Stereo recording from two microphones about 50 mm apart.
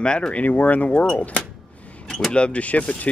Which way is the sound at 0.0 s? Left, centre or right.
Centre.